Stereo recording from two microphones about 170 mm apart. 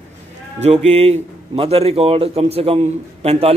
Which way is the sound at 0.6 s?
40° right (ahead or behind).